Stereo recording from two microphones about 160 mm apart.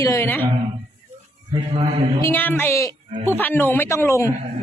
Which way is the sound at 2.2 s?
10° left (ahead or behind).